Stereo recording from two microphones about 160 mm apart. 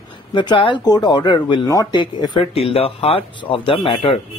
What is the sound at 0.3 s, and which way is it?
A man's voice, 30° left (ahead or behind).